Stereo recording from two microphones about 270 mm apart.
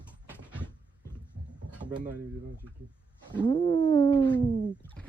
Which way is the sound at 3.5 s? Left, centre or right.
Centre.